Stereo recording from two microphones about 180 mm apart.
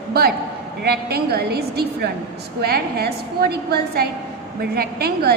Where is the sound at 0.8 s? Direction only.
60° right (ahead or behind).